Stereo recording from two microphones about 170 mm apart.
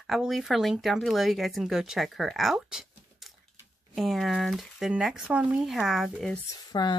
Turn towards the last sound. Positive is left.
turn(degrees=25)  # may be behind; listen again after turning